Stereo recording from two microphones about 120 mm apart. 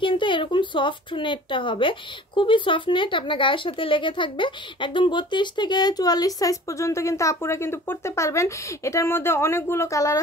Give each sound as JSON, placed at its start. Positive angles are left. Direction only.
{"t": 0.0, "sound": "speech", "side_deg": 45}